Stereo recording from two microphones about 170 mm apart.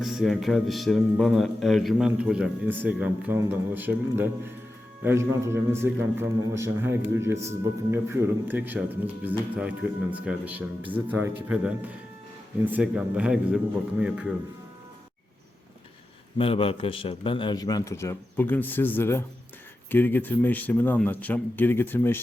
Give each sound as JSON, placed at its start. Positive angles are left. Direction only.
{"t": 0.0, "sound": "a man's voice", "side_deg": 0}
{"t": 16.4, "sound": "a man's voice", "side_deg": 35}